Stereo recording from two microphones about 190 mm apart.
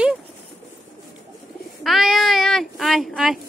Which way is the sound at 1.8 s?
Centre (ahead or behind).